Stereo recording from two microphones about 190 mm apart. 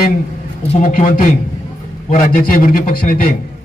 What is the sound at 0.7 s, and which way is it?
A man's voice, 45° left (ahead or behind).